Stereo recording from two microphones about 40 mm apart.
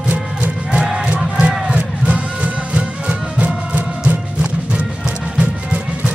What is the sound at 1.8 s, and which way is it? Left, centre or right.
Music, right.